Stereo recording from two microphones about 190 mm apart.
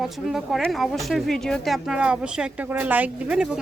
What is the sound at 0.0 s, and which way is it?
A woman's voice, centre (ahead or behind).